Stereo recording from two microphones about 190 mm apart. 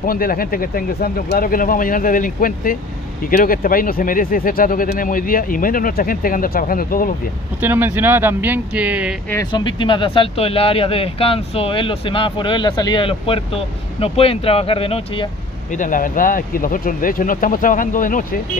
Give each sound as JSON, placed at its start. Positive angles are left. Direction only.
{"t": 0.0, "sound": "speech", "side_deg": 50}
{"t": 7.6, "sound": "speech", "side_deg": -10}
{"t": 9.3, "sound": "speech", "side_deg": 20}
{"t": 15.7, "sound": "speech", "side_deg": 45}